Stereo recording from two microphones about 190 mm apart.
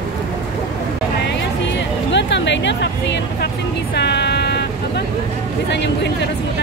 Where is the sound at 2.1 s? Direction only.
70° left (ahead or behind).